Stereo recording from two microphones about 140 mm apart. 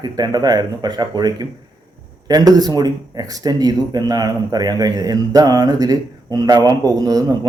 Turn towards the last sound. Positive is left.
turn(degrees=-25)  # may be behind; listen again after turning